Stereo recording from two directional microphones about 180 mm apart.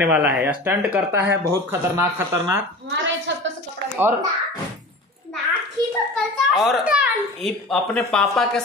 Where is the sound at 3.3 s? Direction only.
75° right (ahead or behind).